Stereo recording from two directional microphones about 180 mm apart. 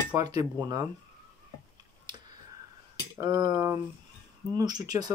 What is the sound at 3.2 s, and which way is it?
Speech, 20° right (ahead or behind).